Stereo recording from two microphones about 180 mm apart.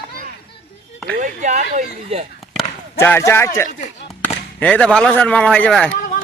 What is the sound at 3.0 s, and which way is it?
Speech, 15° left (ahead or behind).